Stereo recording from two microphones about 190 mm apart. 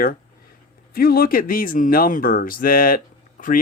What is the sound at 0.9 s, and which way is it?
Speech, 50° left (ahead or behind).